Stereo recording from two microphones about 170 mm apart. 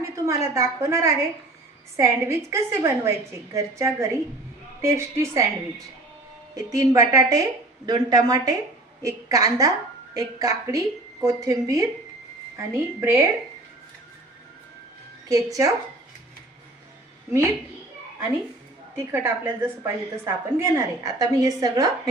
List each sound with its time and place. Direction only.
0.0 s a woman's voice: 15° right (ahead or behind)
15.3 s a woman's voice: 20° right (ahead or behind)
18.9 s a woman's voice: 15° right (ahead or behind)